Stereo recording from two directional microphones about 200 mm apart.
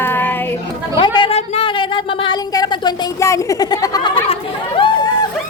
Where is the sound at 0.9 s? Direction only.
25° left (ahead or behind).